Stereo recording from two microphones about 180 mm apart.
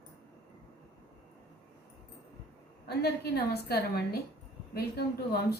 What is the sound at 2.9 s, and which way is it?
A woman's voice, 65° left (ahead or behind).